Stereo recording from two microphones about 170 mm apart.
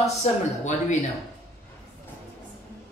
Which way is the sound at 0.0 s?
45° left (ahead or behind).